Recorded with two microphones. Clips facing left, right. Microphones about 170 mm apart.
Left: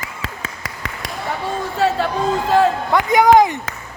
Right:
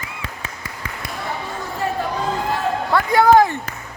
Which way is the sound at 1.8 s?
85° left.